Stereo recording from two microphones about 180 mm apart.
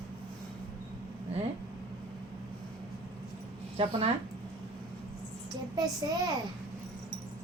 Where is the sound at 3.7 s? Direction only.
30° right (ahead or behind).